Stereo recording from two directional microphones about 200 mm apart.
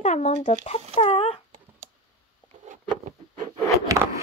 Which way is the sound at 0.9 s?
30° left (ahead or behind).